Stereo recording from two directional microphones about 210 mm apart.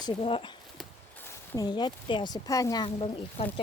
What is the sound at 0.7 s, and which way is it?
Speech, 10° left (ahead or behind).